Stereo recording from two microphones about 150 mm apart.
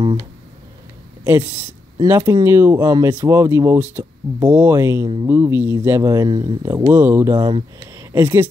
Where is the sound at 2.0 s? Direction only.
20° right (ahead or behind).